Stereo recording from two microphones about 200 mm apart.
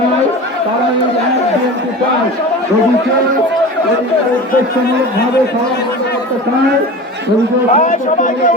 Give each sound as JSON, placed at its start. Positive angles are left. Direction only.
{"t": 7.7, "sound": "speech", "side_deg": 40}